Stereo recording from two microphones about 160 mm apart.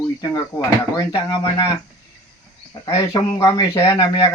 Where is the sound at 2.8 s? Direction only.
20° left (ahead or behind).